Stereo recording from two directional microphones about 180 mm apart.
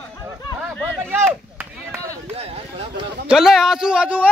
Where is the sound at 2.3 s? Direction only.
35° right (ahead or behind).